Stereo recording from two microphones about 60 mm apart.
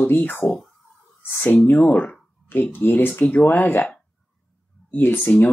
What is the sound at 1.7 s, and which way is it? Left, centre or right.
Speech, left.